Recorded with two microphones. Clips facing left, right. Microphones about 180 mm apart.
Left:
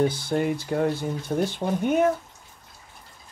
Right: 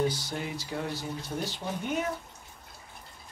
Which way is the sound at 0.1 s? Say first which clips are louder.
Left 10 dB; 55° left (ahead or behind).